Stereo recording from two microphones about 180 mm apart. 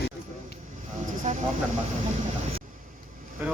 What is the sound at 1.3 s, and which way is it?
Speech, 40° right (ahead or behind).